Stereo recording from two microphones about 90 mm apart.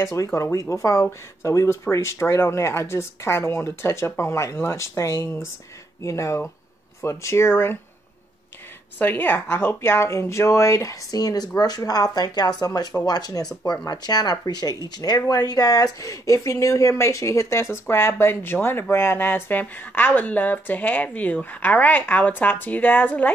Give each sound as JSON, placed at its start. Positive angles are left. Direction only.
{"t": 0.0, "sound": "speech", "side_deg": 35}
{"t": 8.9, "sound": "speech", "side_deg": 20}